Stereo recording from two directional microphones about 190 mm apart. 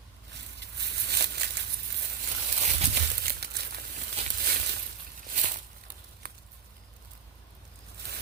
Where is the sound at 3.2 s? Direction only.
55° right (ahead or behind).